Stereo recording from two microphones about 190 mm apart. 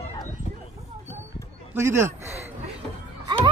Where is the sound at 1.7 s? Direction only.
15° right (ahead or behind).